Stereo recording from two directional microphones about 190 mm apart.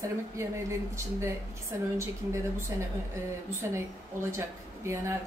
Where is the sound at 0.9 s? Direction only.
15° right (ahead or behind).